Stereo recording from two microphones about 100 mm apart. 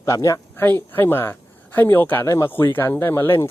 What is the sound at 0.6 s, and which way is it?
Speech, 20° left (ahead or behind).